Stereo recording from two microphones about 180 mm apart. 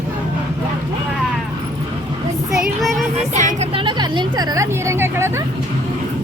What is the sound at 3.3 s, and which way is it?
Music, 40° right (ahead or behind).